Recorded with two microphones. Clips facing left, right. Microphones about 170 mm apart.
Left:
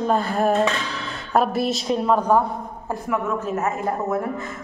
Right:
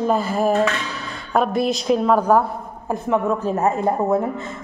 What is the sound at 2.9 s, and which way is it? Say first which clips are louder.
A woman's voice: right 4 dB; 30° right (ahead or behind).